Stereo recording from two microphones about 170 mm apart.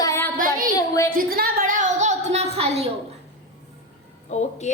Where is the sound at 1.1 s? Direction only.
60° right (ahead or behind); by 2.9 s 35° right (ahead or behind).